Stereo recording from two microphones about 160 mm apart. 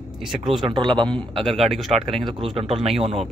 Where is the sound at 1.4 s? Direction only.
Centre (ahead or behind).